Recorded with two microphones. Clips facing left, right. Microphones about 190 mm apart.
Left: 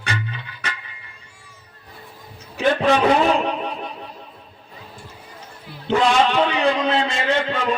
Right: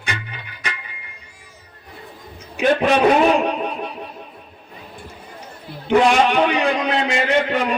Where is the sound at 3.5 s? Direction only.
15° right (ahead or behind).